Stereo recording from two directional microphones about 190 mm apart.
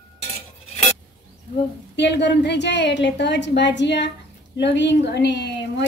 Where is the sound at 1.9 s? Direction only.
65° left (ahead or behind).